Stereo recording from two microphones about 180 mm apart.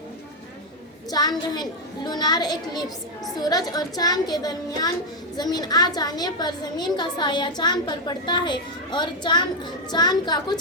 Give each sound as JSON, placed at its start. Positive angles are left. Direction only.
{"t": 1.1, "sound": "a woman's voice", "side_deg": 20}